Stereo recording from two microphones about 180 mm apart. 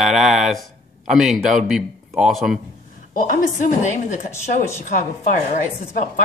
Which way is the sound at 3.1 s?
45° left (ahead or behind).